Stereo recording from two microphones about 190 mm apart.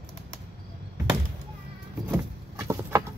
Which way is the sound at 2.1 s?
15° right (ahead or behind).